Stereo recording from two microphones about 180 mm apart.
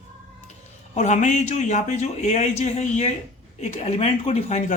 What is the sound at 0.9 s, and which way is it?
Speech, 40° left (ahead or behind).